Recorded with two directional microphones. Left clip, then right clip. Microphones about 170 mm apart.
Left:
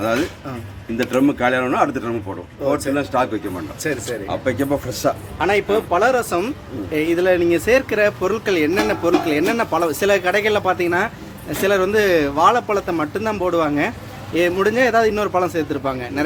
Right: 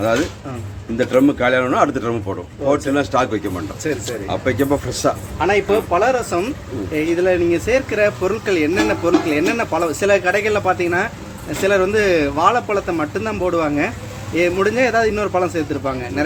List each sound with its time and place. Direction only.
0.9 s speech: 5° left (ahead or behind)
3.8 s speech: 5° left (ahead or behind)
5.4 s speech: 15° left (ahead or behind)